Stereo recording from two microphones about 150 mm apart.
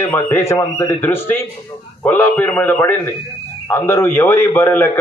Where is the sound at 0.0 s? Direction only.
15° left (ahead or behind).